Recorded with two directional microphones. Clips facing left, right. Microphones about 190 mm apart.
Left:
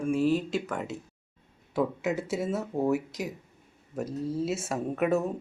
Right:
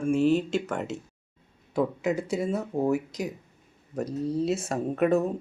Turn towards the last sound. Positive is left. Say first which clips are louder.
# right 3 dB
turn(degrees=5)  # may be behind; listen again after turning